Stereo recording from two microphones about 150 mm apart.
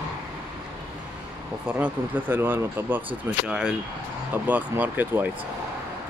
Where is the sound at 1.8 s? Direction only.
15° right (ahead or behind).